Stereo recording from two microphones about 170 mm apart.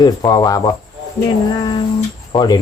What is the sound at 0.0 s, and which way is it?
Speech, 20° left (ahead or behind).